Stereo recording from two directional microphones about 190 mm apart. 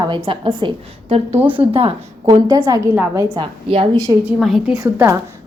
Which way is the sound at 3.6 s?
30° right (ahead or behind).